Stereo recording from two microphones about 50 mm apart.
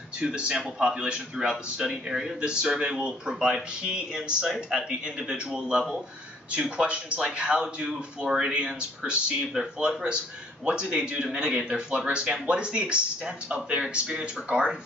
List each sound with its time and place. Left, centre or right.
0.2 s a man's voice: centre
5.7 s a man's voice: centre
9.5 s a man's voice: centre